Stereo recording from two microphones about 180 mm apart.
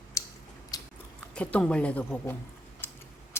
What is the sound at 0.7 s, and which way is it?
Biting, 20° left (ahead or behind).